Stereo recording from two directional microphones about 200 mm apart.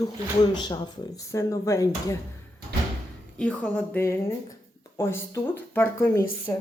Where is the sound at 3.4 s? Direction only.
5° left (ahead or behind).